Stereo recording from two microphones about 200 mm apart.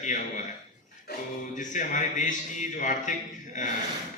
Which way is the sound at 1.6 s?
40° left (ahead or behind).